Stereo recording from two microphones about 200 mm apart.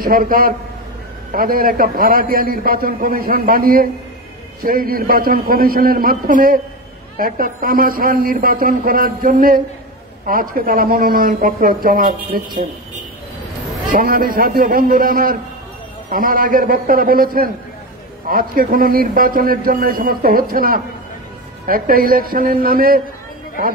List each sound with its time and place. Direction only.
0.0 s a man's voice: 45° right (ahead or behind)
13.9 s a man's voice: 45° right (ahead or behind)